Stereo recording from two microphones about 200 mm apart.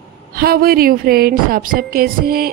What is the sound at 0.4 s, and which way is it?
A woman's voice, 50° right (ahead or behind).